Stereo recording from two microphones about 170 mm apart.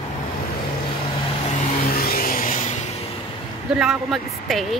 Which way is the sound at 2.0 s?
60° left (ahead or behind).